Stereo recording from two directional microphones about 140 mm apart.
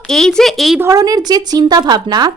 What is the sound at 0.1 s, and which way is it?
Speech, 5° left (ahead or behind).